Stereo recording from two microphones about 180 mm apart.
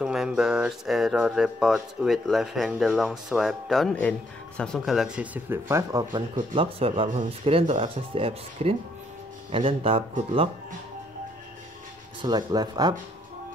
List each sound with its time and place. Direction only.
0.0 s speech: 5° right (ahead or behind); by 10.0 s 30° right (ahead or behind)
12.2 s speech: 20° right (ahead or behind)